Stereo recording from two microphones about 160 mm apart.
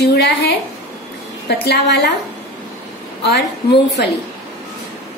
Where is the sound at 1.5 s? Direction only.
90° left.